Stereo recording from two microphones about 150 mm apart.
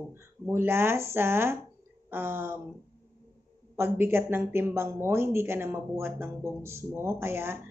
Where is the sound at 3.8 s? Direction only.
15° right (ahead or behind).